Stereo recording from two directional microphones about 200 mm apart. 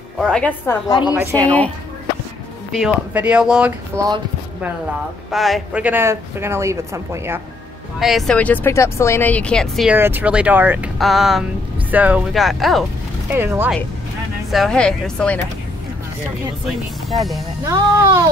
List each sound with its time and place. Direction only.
0.2 s speech: 5° left (ahead or behind)
1.1 s speech: 15° right (ahead or behind)
3.1 s speech: 5° right (ahead or behind)
5.3 s speech: centre (ahead or behind)
8.0 s speech: centre (ahead or behind)
9.9 s speech: 10° right (ahead or behind)
13.3 s speech: 10° right (ahead or behind)
14.5 s speech: centre (ahead or behind)
16.6 s speech: centre (ahead or behind)
17.6 s speech: 15° right (ahead or behind)